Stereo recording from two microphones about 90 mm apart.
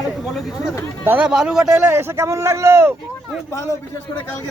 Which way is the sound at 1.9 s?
30° right (ahead or behind).